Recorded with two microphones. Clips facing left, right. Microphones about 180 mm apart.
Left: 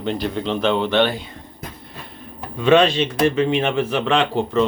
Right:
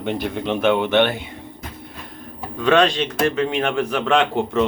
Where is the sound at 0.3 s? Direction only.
10° right (ahead or behind).